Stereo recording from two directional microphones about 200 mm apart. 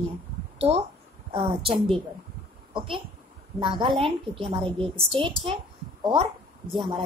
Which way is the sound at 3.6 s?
25° right (ahead or behind).